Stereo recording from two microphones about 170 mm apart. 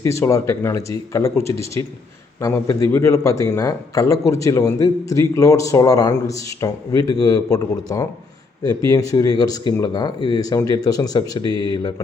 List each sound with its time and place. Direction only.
0.0 s speech: 15° left (ahead or behind)